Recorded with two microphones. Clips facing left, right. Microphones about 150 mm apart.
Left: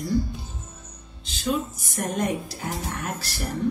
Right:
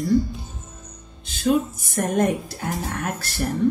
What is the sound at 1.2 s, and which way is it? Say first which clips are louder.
A woman's voice: right 6 dB; 50° right (ahead or behind).